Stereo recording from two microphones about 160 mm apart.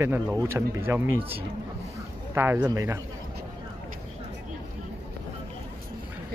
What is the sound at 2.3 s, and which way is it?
Speech, 15° right (ahead or behind).